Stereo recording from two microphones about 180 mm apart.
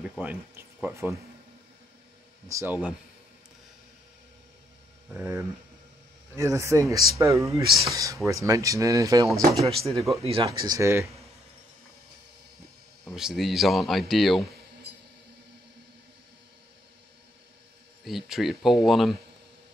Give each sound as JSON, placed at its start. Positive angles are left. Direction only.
{"t": 0.0, "sound": "speech", "side_deg": -5}
{"t": 2.4, "sound": "speech", "side_deg": -15}
{"t": 5.1, "sound": "speech", "side_deg": -5}
{"t": 6.3, "sound": "speech", "side_deg": -15}
{"t": 9.8, "sound": "speech", "side_deg": 0}
{"t": 10.2, "sound": "speech", "side_deg": -30}
{"t": 10.6, "sound": "speech", "side_deg": -20}
{"t": 13.1, "sound": "speech", "side_deg": 0}
{"t": 18.0, "sound": "speech", "side_deg": 0}